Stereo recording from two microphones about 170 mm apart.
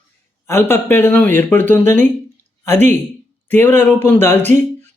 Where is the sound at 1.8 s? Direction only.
45° right (ahead or behind).